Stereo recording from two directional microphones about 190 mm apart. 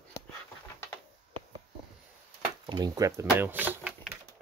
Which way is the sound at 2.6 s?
20° right (ahead or behind).